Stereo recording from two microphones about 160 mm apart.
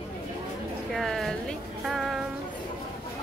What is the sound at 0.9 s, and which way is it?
Music, centre (ahead or behind).